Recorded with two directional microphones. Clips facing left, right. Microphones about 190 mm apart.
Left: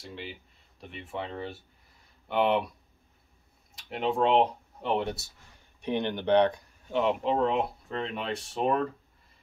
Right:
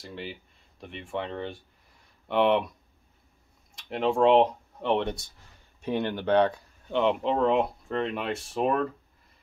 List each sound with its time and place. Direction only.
0.0 s speech: centre (ahead or behind)
3.7 s speech: centre (ahead or behind)
5.8 s speech: 20° left (ahead or behind)
6.9 s speech: 5° left (ahead or behind)